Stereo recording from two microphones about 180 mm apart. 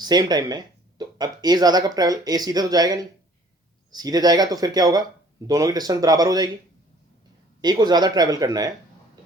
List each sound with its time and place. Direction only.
0.0 s speech: 25° right (ahead or behind)
7.6 s speech: 25° right (ahead or behind)